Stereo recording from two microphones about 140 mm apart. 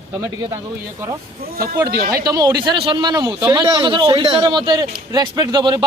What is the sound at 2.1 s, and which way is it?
A man's voice, 25° right (ahead or behind).